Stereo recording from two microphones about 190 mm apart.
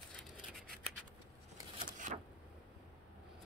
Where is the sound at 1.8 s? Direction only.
40° right (ahead or behind).